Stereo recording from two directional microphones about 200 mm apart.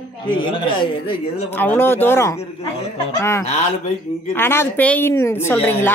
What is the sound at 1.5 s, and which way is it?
A woman's voice, 10° left (ahead or behind).